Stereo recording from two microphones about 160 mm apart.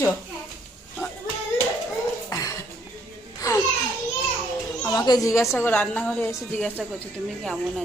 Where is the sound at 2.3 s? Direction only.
20° left (ahead or behind).